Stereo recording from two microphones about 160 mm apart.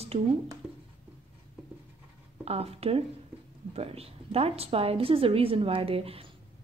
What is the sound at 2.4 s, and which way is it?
A woman's voice, 40° right (ahead or behind).